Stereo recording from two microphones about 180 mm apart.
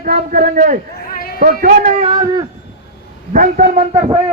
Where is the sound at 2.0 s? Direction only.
25° right (ahead or behind).